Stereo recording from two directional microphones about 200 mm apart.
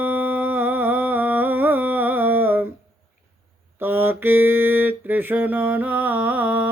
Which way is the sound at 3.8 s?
10° right (ahead or behind).